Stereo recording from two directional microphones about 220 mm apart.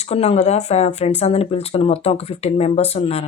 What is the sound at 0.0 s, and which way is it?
A woman's voice, 30° left (ahead or behind).